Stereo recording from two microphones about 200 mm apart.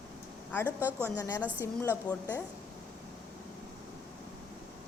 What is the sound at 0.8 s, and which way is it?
Speech, 10° right (ahead or behind).